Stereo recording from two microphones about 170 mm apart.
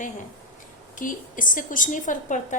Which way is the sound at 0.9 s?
50° left (ahead or behind).